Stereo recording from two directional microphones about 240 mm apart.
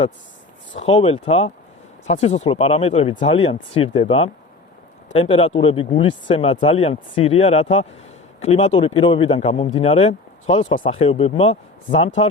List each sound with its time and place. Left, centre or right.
0.8 s a man's voice: left